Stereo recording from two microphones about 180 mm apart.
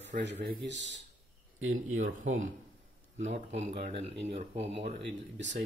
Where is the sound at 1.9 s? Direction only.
90° right.